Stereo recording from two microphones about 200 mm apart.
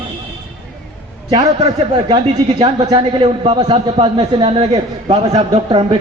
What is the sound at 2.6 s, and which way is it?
A man's voice, 20° right (ahead or behind).